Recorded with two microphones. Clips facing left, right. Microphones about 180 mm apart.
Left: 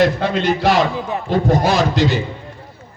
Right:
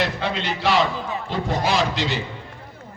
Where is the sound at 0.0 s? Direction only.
45° left (ahead or behind).